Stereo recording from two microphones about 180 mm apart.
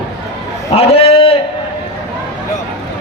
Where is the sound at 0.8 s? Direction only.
30° left (ahead or behind).